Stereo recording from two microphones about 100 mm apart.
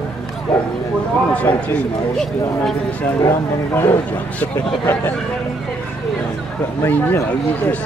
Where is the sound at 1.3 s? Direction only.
15° left (ahead or behind).